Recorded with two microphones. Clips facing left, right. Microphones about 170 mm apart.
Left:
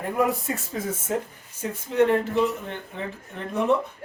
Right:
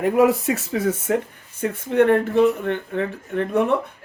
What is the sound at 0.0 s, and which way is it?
Speech, 85° right.